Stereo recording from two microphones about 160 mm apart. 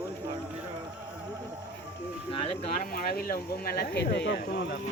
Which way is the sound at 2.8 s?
70° left (ahead or behind).